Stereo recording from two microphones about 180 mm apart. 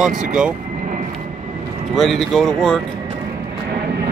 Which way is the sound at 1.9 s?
Centre (ahead or behind).